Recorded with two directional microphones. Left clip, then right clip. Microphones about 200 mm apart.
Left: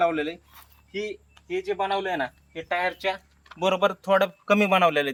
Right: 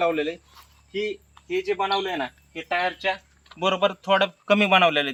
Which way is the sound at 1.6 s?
10° left (ahead or behind).